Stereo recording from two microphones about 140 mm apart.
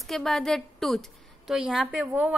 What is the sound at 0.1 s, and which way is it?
A woman's voice, centre (ahead or behind).